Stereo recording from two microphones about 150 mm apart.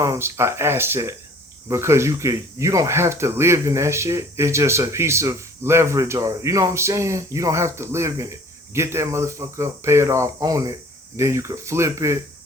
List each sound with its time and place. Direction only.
0.0 s speech: 20° right (ahead or behind)